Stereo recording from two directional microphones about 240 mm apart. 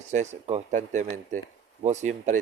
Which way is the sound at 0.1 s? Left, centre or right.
Right.